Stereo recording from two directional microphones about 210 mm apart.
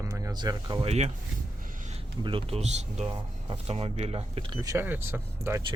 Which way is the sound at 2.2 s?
25° right (ahead or behind).